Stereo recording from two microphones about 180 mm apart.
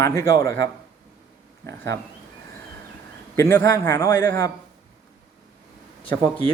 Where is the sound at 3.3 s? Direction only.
15° left (ahead or behind).